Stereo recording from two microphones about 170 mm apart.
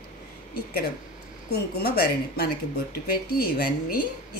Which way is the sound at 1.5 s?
70° left (ahead or behind).